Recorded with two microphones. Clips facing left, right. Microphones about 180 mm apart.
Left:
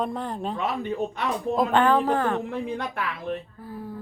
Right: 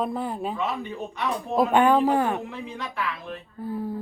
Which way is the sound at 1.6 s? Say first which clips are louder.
Right 2 dB; 10° right (ahead or behind).